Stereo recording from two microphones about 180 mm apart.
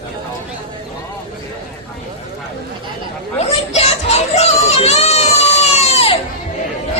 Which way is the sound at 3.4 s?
35° left (ahead or behind).